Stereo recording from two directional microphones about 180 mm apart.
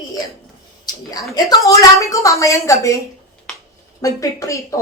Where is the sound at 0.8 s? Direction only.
20° left (ahead or behind).